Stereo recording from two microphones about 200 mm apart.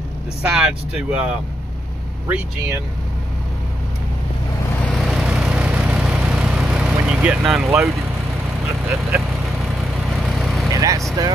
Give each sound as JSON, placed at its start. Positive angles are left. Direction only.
{"t": 0.4, "sound": "speech", "side_deg": -5}
{"t": 4.8, "sound": "vehicle", "side_deg": 0}
{"t": 7.1, "sound": "speech", "side_deg": -5}
{"t": 10.0, "sound": "vehicle", "side_deg": 0}
{"t": 10.7, "sound": "vehicle", "side_deg": -15}